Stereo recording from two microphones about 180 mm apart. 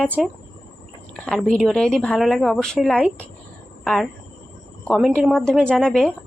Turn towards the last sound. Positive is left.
turn(degrees=0)  # may be behind; listen again after turning